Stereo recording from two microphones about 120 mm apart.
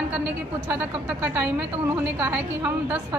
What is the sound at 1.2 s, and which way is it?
A woman's voice, 15° right (ahead or behind).